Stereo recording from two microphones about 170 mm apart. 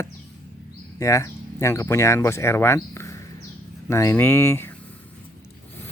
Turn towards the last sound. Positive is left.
turn(degrees=15)  # may be behind; listen again after turning